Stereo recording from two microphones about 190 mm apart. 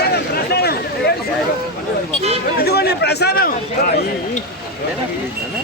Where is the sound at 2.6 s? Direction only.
55° left (ahead or behind).